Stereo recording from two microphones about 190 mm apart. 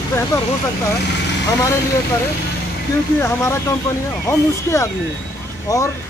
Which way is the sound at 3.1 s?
15° left (ahead or behind).